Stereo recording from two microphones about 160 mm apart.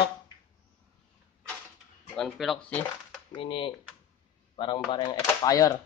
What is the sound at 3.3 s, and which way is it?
Speech, 30° left (ahead or behind).